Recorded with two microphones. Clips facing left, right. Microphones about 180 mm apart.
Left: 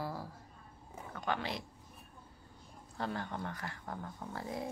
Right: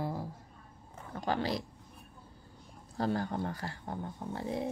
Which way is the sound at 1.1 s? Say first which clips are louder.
Right 5 dB; 35° right (ahead or behind).